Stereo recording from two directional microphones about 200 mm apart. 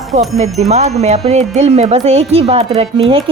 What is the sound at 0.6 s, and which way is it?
A woman's voice, 35° right (ahead or behind).